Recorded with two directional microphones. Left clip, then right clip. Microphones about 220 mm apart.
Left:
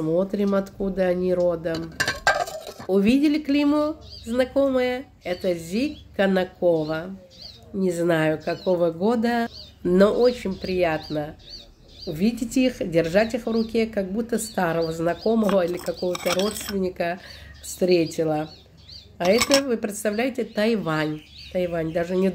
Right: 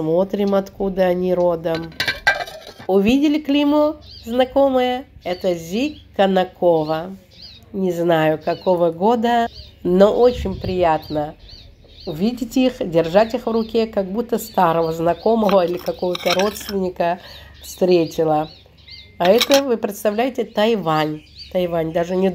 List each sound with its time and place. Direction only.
0.0 s speech: centre (ahead or behind)
2.2 s cutlery: 20° left (ahead or behind)
2.9 s speech: 5° right (ahead or behind)
16.2 s speech: 10° left (ahead or behind)
16.8 s speech: 5° right (ahead or behind)
19.7 s speech: 5° right (ahead or behind)